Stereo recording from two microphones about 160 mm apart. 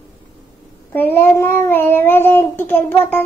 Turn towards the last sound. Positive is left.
turn(degrees=10)  # may be behind; listen again after turning